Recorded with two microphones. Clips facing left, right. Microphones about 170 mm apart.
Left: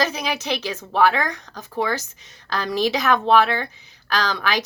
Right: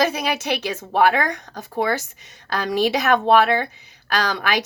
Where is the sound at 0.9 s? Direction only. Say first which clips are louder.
Right 1 dB; 50° right (ahead or behind).